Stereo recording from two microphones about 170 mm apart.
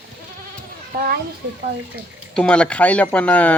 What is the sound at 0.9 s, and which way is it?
Speech, 65° right (ahead or behind).